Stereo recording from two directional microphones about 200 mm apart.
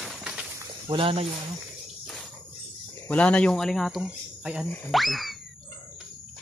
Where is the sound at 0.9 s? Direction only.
25° right (ahead or behind).